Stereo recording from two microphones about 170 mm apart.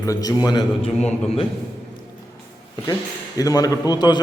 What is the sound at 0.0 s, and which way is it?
Speech, 20° left (ahead or behind).